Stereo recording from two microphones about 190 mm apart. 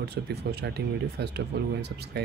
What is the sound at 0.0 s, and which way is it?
Speech, 60° right (ahead or behind).